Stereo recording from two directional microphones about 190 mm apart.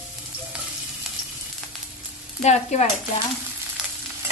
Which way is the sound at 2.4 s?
40° left (ahead or behind).